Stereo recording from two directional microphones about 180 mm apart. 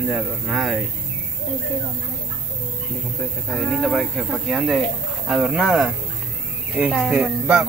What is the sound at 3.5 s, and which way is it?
Speech, centre (ahead or behind).